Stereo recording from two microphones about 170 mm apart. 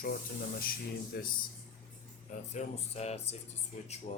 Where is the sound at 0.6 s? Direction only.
60° left (ahead or behind).